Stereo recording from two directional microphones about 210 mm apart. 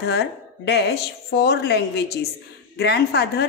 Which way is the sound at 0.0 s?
50° left (ahead or behind).